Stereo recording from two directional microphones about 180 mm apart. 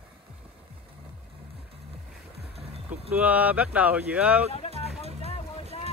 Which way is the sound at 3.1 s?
10° right (ahead or behind).